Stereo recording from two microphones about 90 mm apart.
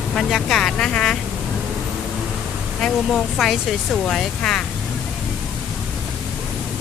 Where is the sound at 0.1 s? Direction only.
5° left (ahead or behind).